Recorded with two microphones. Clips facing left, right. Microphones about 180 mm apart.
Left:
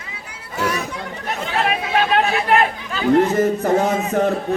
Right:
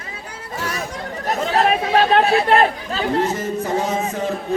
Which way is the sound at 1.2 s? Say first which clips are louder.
Right 4 dB; 40° right (ahead or behind).